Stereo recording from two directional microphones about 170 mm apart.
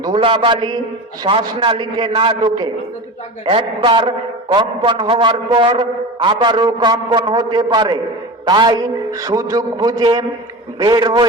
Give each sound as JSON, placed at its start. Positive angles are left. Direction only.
{"t": 0.0, "sound": "a man's voice", "side_deg": -30}